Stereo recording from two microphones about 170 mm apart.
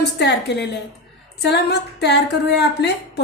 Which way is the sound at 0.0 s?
85° left.